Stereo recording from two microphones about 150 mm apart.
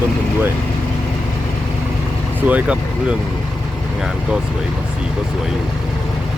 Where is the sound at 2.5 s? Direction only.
10° right (ahead or behind).